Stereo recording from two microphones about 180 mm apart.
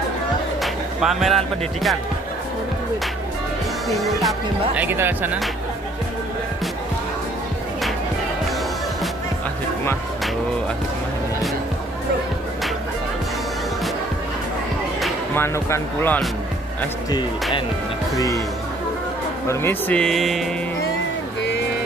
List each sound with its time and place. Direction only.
0.6 s speech: centre (ahead or behind)
3.9 s speech: centre (ahead or behind)
4.8 s speech: 10° right (ahead or behind)
15.3 s speech: 15° left (ahead or behind)
18.1 s speech: 20° left (ahead or behind)
19.4 s speech: 15° left (ahead or behind)